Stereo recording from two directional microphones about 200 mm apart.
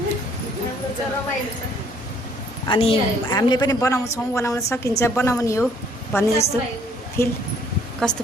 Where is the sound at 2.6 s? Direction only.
25° left (ahead or behind); by 8.2 s 5° left (ahead or behind).